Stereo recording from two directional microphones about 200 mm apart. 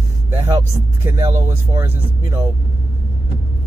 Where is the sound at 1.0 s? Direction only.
15° right (ahead or behind).